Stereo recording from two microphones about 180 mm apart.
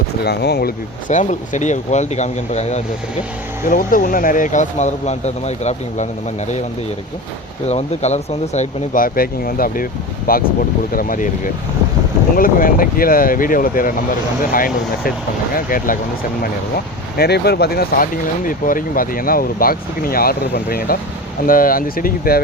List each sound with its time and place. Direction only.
0.3 s speech: 65° left (ahead or behind)
1.0 s speech: 45° left (ahead or behind)
3.7 s speech: 50° left (ahead or behind)
7.7 s speech: 40° left (ahead or behind)
12.4 s speech: 50° left (ahead or behind)
17.2 s speech: 65° left (ahead or behind)